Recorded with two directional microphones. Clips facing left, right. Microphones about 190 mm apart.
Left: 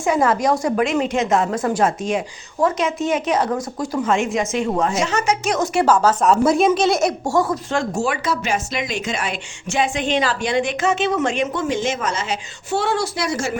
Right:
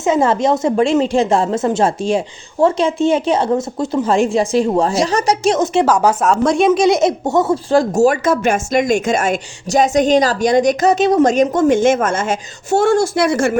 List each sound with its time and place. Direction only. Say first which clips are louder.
0.0 s a woman's voice: right 3 dB; 25° right (ahead or behind)
5.5 s a woman's voice: right 5 dB; 25° right (ahead or behind)
5.8 s speech: right 2 dB; 10° right (ahead or behind)
6.2 s a woman's voice: right 1 dB; 5° left (ahead or behind)
6.8 s speech: right 5 dB; 20° right (ahead or behind); by 13.5 s 55° right (ahead or behind)